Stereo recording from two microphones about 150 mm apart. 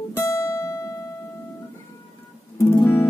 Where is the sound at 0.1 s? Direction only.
15° left (ahead or behind).